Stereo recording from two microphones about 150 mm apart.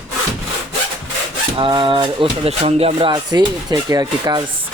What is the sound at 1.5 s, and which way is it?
Speech, 30° right (ahead or behind).